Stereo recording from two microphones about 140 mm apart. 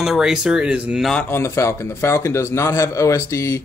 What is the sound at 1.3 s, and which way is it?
A man's voice, 20° left (ahead or behind).